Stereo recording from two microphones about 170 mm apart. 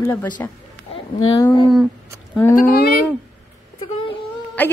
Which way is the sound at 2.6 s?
60° left (ahead or behind).